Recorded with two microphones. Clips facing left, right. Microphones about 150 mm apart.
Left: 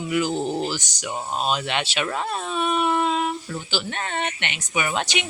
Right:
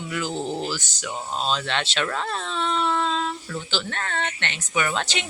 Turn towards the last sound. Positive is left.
turn(degrees=15)  # may be behind; listen again after turning